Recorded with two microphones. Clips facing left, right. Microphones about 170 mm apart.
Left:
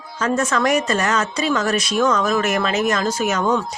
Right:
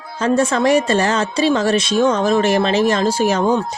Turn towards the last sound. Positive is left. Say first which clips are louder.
# right 4 dB
turn(degrees=-30)  # may be behind; listen again after turning